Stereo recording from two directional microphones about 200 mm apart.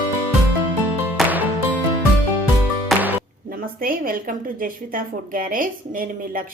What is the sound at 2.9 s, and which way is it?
Music, centre (ahead or behind).